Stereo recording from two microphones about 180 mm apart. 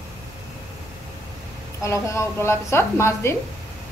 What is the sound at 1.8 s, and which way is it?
A woman's voice, 15° left (ahead or behind).